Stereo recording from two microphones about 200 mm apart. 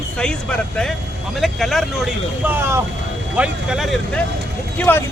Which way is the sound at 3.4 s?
Centre (ahead or behind).